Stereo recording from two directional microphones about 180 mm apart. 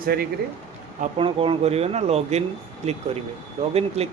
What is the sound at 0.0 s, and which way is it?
Speech, 60° right (ahead or behind).